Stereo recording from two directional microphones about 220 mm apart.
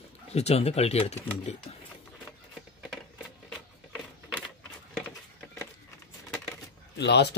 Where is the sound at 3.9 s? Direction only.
Centre (ahead or behind).